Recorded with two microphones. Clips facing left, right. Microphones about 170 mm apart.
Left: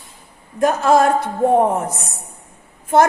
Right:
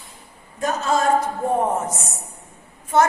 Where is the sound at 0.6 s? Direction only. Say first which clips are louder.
Left 7 dB; 60° left (ahead or behind).